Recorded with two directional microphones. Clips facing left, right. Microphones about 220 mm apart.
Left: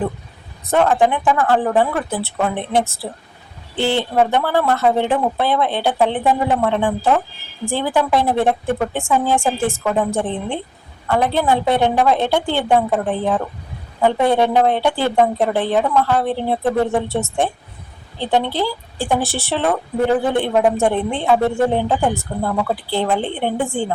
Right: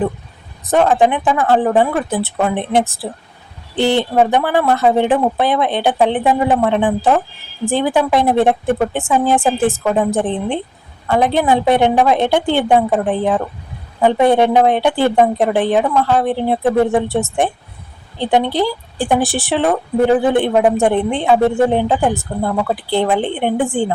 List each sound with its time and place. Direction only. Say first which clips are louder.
0.6 s a woman's voice: right 2 dB; 20° right (ahead or behind)